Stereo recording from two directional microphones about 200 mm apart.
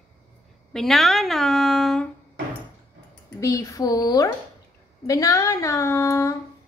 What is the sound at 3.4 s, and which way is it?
Speech, 15° left (ahead or behind).